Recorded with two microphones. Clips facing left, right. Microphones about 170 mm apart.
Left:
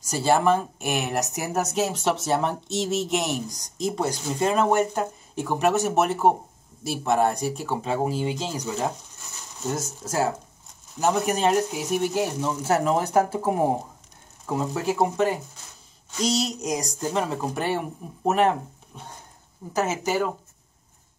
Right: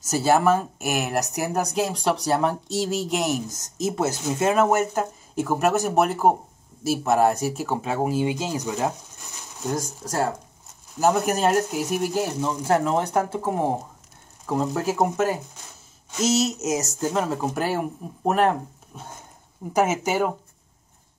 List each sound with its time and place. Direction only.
0.2 s speech: 5° right (ahead or behind)
9.8 s speech: 5° left (ahead or behind)
19.7 s speech: 15° right (ahead or behind)